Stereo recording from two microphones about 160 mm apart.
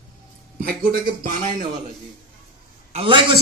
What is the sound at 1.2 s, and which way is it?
Speech, 55° right (ahead or behind).